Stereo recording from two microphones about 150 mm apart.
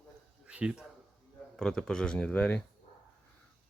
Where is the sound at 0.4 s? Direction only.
5° right (ahead or behind).